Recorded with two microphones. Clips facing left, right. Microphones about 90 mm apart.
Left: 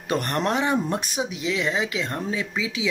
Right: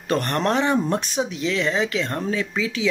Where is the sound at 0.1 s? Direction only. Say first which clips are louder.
Right 2 dB; 10° left (ahead or behind).